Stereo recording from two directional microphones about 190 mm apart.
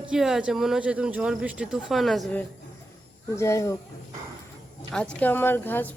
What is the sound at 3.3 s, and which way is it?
Speech, 15° left (ahead or behind).